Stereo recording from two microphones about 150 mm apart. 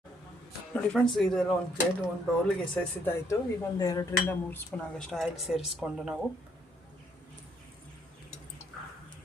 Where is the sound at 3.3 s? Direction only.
25° left (ahead or behind).